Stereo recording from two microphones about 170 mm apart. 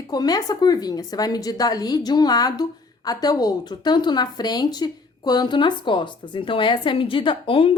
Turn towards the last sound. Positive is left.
turn(degrees=30)  # may be behind; listen again after turning